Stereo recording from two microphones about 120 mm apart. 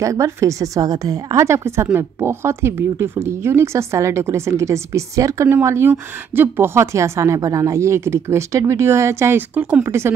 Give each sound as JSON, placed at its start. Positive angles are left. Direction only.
{"t": 0.0, "sound": "a woman's voice", "side_deg": -25}
{"t": 9.8, "sound": "a woman's voice", "side_deg": -20}